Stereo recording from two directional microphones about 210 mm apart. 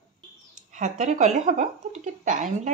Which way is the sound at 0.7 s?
35° right (ahead or behind).